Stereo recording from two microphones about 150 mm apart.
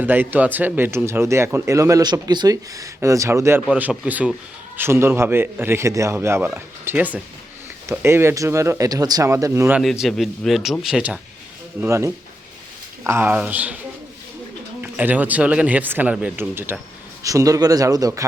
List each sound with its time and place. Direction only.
0.0 s speech: 15° right (ahead or behind)
9.7 s speech: 5° right (ahead or behind)
11.8 s speech: 20° right (ahead or behind)
14.8 s speech: 10° right (ahead or behind)